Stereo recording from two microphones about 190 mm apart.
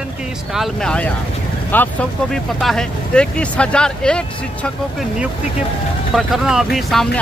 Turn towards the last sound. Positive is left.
turn(degrees=0)  # may be behind; listen again after turning